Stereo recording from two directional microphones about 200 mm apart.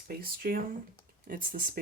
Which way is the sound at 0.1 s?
50° right (ahead or behind).